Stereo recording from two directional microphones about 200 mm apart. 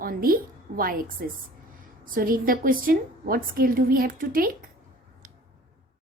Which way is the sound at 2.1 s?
45° right (ahead or behind).